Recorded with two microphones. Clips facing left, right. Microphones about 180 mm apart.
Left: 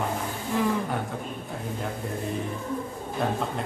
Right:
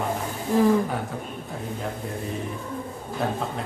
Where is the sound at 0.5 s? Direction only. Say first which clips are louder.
Right 6 dB; 35° right (ahead or behind).